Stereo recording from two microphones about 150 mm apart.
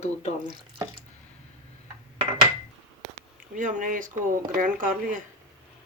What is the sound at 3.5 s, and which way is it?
Speech, 60° right (ahead or behind).